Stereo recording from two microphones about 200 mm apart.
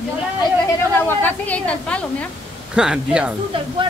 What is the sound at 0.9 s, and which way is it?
A woman's voice, 10° left (ahead or behind).